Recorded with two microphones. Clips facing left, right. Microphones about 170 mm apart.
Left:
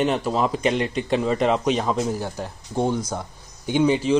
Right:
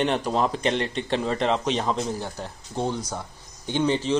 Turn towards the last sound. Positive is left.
turn(degrees=10)  # may be behind; listen again after turning